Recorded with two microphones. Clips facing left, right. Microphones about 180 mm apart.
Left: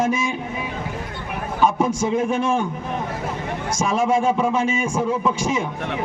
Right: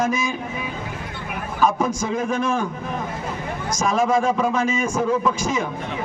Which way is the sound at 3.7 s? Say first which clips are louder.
Even; 25° left (ahead or behind).